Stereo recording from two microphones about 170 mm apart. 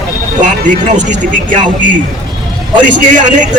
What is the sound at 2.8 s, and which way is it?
Speech, 50° right (ahead or behind).